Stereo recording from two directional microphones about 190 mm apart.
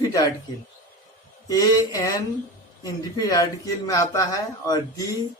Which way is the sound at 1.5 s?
20° left (ahead or behind).